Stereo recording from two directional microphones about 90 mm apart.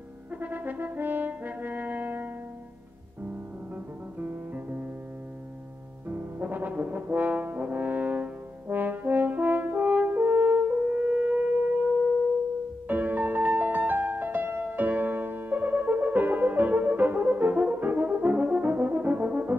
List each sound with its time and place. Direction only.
0.4 s brass instrument: 20° right (ahead or behind)
3.7 s music: 20° right (ahead or behind)
6.0 s brass instrument: 20° right (ahead or behind)
12.8 s music: 20° right (ahead or behind)